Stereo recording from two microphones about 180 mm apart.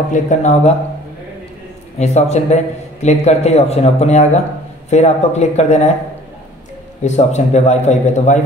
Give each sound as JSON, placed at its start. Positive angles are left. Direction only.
{"t": 0.1, "sound": "a man's voice", "side_deg": 40}
{"t": 2.0, "sound": "a man's voice", "side_deg": 40}
{"t": 7.0, "sound": "a man's voice", "side_deg": 40}